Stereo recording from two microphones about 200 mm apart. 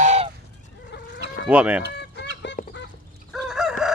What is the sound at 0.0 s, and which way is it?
Fowl, 35° right (ahead or behind).